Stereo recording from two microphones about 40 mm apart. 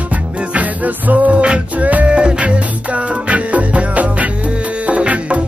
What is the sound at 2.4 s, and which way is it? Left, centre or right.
Music, right.